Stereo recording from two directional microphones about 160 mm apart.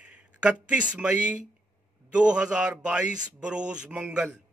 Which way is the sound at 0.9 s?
10° right (ahead or behind).